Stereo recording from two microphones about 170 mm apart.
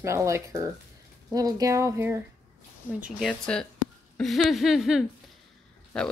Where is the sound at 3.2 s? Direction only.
5° left (ahead or behind).